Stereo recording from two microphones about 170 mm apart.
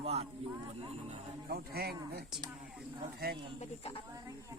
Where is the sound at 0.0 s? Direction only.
35° right (ahead or behind).